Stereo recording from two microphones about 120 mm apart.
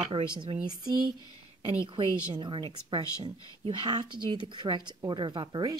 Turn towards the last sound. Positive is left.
turn(degrees=-35)  # may be behind; listen again after turning